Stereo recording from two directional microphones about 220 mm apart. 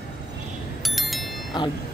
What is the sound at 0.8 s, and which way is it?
Wind chime, centre (ahead or behind).